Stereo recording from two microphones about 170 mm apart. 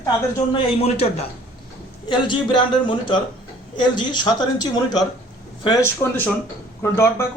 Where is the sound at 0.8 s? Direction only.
35° left (ahead or behind).